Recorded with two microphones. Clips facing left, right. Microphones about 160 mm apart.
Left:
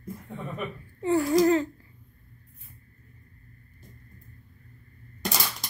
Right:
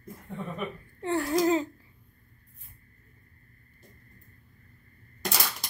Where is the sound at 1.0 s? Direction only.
Centre (ahead or behind).